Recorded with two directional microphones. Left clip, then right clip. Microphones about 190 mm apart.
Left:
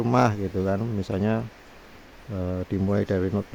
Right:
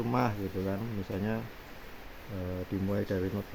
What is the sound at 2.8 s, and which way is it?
Speech, 55° left (ahead or behind).